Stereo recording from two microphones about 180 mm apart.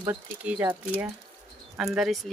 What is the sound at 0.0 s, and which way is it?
Speech, 10° right (ahead or behind).